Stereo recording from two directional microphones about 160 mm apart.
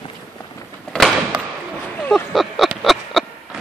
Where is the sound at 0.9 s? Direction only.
Centre (ahead or behind).